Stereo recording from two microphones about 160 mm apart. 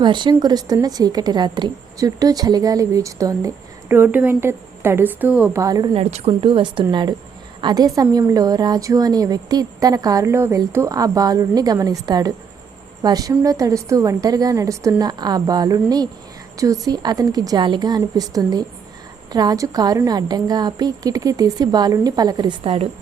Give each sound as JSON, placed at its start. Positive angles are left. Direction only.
{"t": 0.0, "sound": "a woman's voice", "side_deg": -30}
{"t": 5.6, "sound": "a woman's voice", "side_deg": -25}
{"t": 5.9, "sound": "a woman's voice", "side_deg": -40}